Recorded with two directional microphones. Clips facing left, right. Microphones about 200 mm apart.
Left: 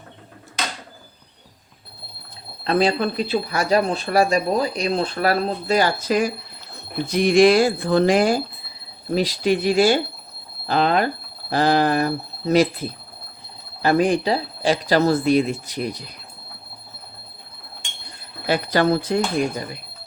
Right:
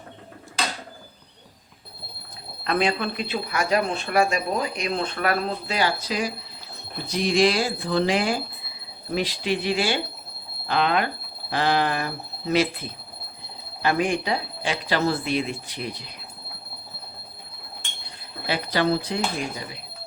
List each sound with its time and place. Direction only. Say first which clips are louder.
2.6 s speech: left 4 dB; 35° left (ahead or behind)
18.4 s speech: left 4 dB; 45° left (ahead or behind)